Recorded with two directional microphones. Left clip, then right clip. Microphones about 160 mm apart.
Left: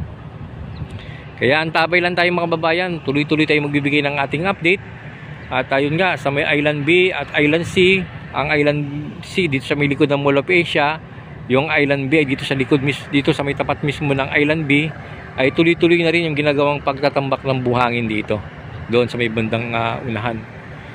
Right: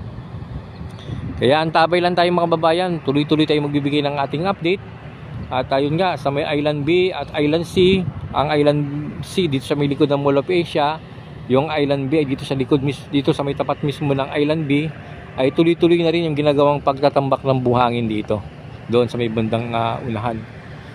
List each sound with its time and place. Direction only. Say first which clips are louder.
1.4 s speech: right 1 dB; 15° right (ahead or behind)